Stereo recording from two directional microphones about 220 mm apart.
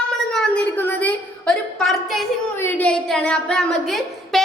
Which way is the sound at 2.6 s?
10° left (ahead or behind).